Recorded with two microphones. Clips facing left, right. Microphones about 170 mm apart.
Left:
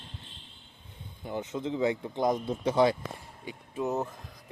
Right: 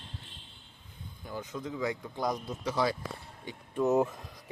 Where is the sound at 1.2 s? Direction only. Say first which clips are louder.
Left 5 dB; 25° left (ahead or behind).